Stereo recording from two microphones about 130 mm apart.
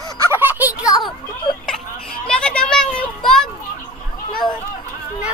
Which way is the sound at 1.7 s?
5° left (ahead or behind).